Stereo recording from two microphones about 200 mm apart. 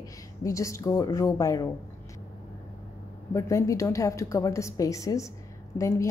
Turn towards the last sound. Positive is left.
turn(degrees=15)  # may be behind; listen again after turning